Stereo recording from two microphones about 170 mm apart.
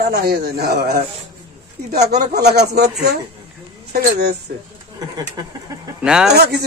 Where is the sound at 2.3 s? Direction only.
75° right (ahead or behind).